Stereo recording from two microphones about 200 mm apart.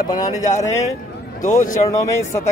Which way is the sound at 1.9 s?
15° left (ahead or behind).